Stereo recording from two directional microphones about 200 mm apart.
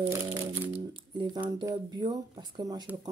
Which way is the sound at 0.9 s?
25° right (ahead or behind).